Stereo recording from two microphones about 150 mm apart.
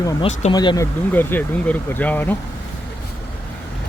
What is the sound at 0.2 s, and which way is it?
Speech, 45° left (ahead or behind).